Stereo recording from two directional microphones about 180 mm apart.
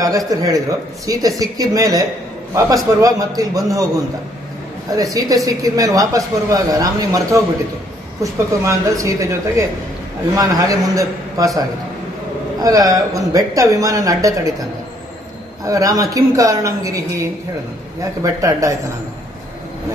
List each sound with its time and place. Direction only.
0.3 s a woman's voice: 20° right (ahead or behind)
4.9 s a woman's voice: 20° right (ahead or behind)
12.6 s a woman's voice: 20° right (ahead or behind)
15.6 s a woman's voice: 20° right (ahead or behind)
18.2 s speech: 20° right (ahead or behind)